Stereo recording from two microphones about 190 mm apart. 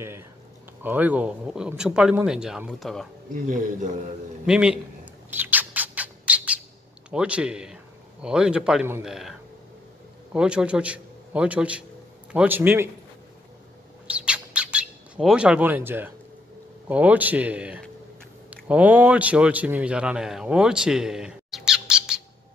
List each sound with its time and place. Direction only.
0.8 s a man's voice: 10° right (ahead or behind)
3.3 s speech: 45° right (ahead or behind)
4.5 s a man's voice: 5° right (ahead or behind)
5.3 s bird: 10° right (ahead or behind)
7.1 s a man's voice: 5° right (ahead or behind)
14.0 s bird: 5° right (ahead or behind)
16.8 s a man's voice: 10° right (ahead or behind)